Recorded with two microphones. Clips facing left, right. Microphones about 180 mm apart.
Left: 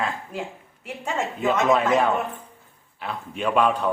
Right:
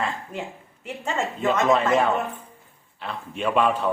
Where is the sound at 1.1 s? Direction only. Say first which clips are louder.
Even; 5° left (ahead or behind).